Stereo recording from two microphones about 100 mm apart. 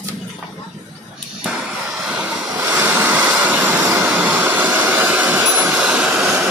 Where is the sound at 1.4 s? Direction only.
5° right (ahead or behind).